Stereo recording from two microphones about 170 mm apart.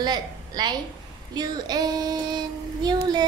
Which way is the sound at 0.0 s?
25° right (ahead or behind).